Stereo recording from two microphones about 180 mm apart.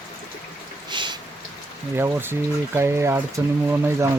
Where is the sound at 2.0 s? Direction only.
10° right (ahead or behind).